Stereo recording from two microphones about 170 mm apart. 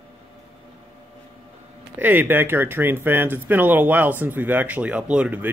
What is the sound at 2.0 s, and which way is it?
Speech, 10° right (ahead or behind).